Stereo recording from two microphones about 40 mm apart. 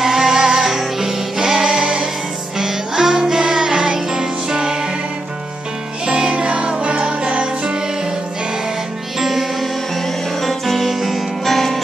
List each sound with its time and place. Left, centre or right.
0.0 s music: centre
6.0 s music: right
9.2 s music: centre